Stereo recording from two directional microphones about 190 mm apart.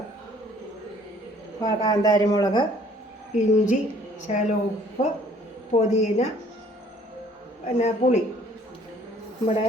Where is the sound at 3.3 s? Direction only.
40° left (ahead or behind).